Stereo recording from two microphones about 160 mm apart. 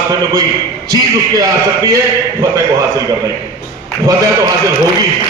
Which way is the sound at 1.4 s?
20° right (ahead or behind).